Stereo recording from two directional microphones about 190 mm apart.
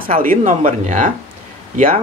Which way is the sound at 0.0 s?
45° right (ahead or behind).